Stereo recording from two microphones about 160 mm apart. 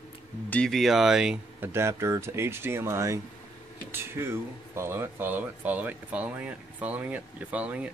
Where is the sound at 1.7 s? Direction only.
15° right (ahead or behind).